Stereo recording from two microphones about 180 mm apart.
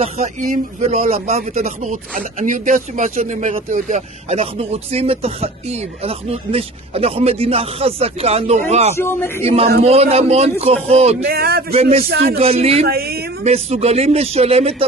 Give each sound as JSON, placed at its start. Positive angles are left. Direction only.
{"t": 0.7, "sound": "a man's voice", "side_deg": -40}
{"t": 8.9, "sound": "speech", "side_deg": 15}
{"t": 9.4, "sound": "a man's voice", "side_deg": -35}
{"t": 11.2, "sound": "a woman's voice", "side_deg": -60}
{"t": 11.7, "sound": "a man's voice", "side_deg": -35}
{"t": 12.1, "sound": "a woman's voice", "side_deg": -65}
{"t": 12.4, "sound": "a man's voice", "side_deg": -35}
{"t": 12.8, "sound": "a woman's voice", "side_deg": -60}
{"t": 13.4, "sound": "a man's voice", "side_deg": -35}